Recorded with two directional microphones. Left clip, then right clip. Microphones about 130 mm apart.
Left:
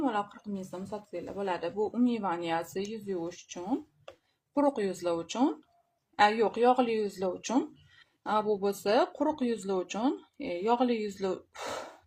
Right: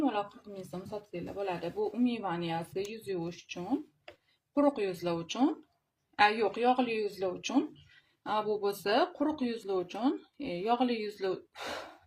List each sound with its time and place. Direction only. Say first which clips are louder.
0.7 s speech: even; 40° left (ahead or behind)